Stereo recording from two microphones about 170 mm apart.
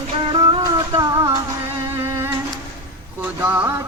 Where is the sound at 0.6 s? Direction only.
20° right (ahead or behind).